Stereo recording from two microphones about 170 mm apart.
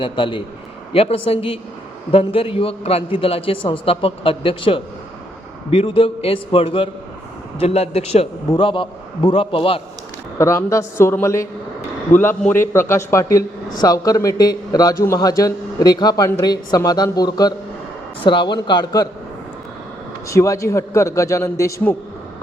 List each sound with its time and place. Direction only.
0.0 s a man's voice: 30° left (ahead or behind)
10.3 s a man's voice: 15° left (ahead or behind)
20.2 s a man's voice: 20° left (ahead or behind)